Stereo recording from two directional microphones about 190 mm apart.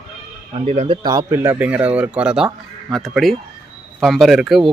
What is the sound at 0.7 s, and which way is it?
Speech, 35° right (ahead or behind).